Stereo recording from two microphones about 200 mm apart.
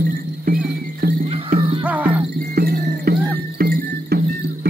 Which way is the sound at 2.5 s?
50° right (ahead or behind).